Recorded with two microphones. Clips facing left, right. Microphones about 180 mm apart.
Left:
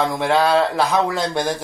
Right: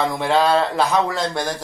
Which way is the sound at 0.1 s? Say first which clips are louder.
Even; 10° left (ahead or behind).